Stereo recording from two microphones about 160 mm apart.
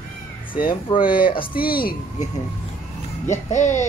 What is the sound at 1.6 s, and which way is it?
Speech, 65° left (ahead or behind).